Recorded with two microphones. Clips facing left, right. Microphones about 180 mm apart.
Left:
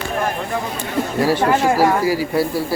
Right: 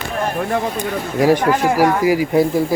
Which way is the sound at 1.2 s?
15° right (ahead or behind).